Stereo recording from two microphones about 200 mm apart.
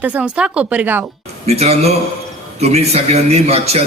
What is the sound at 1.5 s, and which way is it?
A man's voice, 30° right (ahead or behind).